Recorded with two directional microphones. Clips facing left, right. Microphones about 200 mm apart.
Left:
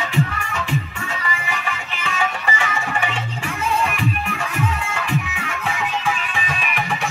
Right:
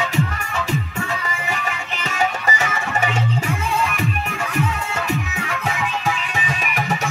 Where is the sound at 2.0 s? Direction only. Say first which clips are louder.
Right 2 dB; 40° right (ahead or behind).